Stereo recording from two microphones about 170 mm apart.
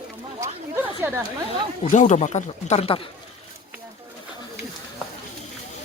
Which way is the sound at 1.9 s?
45° left (ahead or behind).